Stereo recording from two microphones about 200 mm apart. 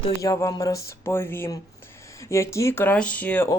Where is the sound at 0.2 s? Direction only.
15° left (ahead or behind).